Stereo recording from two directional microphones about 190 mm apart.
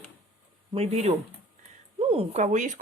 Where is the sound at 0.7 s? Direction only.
35° right (ahead or behind).